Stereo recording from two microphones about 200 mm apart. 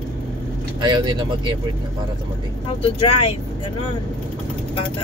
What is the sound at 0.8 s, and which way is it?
Speech, 25° right (ahead or behind).